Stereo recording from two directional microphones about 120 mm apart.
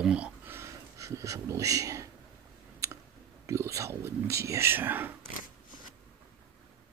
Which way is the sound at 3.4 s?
25° right (ahead or behind).